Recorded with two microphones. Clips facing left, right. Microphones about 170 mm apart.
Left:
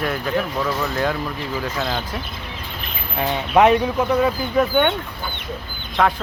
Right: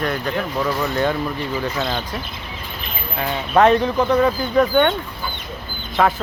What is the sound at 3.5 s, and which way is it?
Speech, 10° left (ahead or behind).